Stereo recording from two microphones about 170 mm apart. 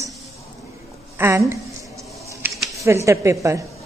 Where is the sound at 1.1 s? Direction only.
15° right (ahead or behind).